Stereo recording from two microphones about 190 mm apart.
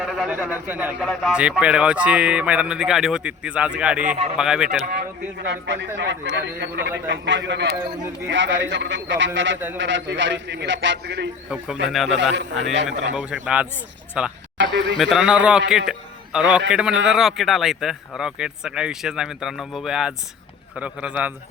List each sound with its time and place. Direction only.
0.0 s a man's voice: centre (ahead or behind)
0.9 s speech: 5° left (ahead or behind)
4.0 s speech: 35° right (ahead or behind)
4.4 s speech: 5° right (ahead or behind)
5.5 s a man's voice: 70° right (ahead or behind)
11.9 s speech: centre (ahead or behind)
12.3 s a man's voice: 70° right (ahead or behind)
13.4 s a man's voice: 5° right (ahead or behind)